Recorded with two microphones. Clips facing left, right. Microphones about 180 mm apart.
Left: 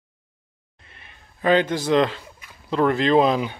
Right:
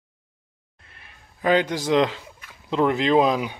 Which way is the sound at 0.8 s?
5° right (ahead or behind).